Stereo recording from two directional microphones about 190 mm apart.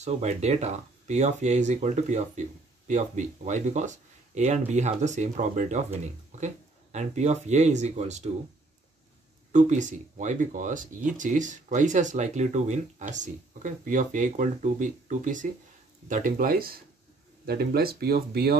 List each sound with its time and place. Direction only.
0.0 s speech: 35° right (ahead or behind)
9.5 s speech: 40° right (ahead or behind); by 18.6 s 55° right (ahead or behind)